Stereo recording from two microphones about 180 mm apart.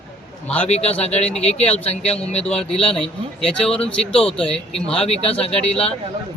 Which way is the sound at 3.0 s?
5° left (ahead or behind).